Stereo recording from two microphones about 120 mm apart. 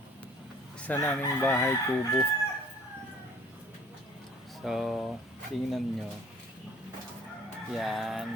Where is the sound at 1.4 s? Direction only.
20° left (ahead or behind).